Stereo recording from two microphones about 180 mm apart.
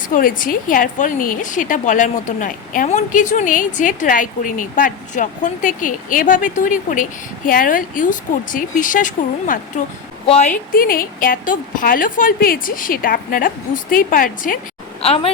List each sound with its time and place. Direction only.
0.1 s a woman's voice: 50° left (ahead or behind)
15.0 s a woman's voice: 35° left (ahead or behind)